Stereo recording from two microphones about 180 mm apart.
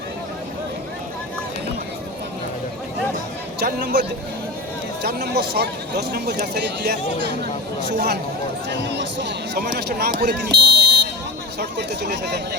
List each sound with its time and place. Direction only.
3.6 s a man's voice: 65° right (ahead or behind)
5.0 s a man's voice: 65° right (ahead or behind)
9.6 s a man's voice: 55° right (ahead or behind)
10.5 s buzzer: 60° right (ahead or behind)
11.8 s speech: 70° right (ahead or behind)